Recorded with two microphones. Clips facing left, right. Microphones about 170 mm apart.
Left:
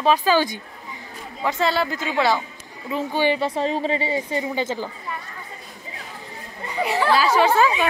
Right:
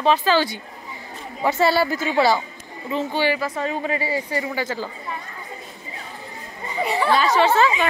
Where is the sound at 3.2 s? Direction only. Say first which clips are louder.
Left 2 dB; 30° left (ahead or behind).